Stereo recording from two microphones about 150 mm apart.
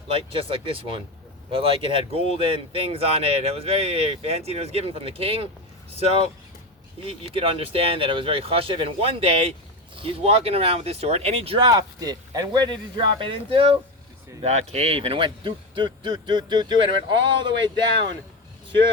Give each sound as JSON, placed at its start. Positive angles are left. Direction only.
{"t": 0.1, "sound": "speech", "side_deg": -40}